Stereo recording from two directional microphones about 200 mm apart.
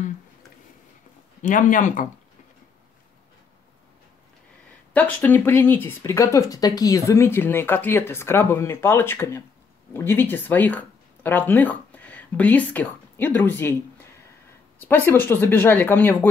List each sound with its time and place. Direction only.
1.4 s speech: 40° left (ahead or behind)
4.9 s speech: 10° left (ahead or behind)
14.8 s speech: 10° left (ahead or behind)